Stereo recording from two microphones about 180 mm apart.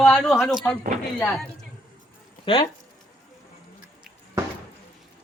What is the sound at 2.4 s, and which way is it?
Speech, 30° left (ahead or behind).